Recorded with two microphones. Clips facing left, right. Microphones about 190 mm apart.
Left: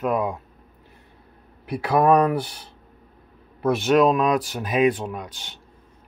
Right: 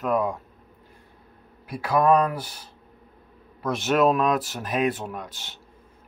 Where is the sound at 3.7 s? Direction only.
Centre (ahead or behind).